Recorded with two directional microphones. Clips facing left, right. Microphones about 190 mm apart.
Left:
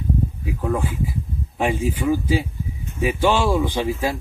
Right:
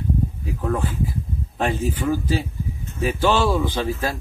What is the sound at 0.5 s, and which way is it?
Speech, 10° left (ahead or behind).